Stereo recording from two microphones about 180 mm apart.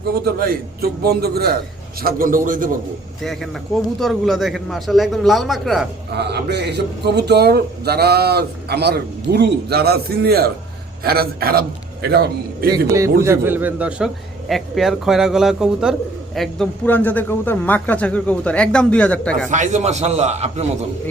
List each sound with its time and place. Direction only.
0.3 s a man's voice: 55° right (ahead or behind)
3.2 s a man's voice: centre (ahead or behind)
6.1 s a man's voice: 65° right (ahead or behind)
12.7 s a man's voice: 20° right (ahead or behind); by 19.5 s 5° left (ahead or behind)
19.5 s a man's voice: 40° right (ahead or behind)